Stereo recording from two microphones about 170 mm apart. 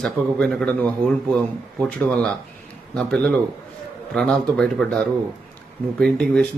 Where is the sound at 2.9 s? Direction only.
5° left (ahead or behind).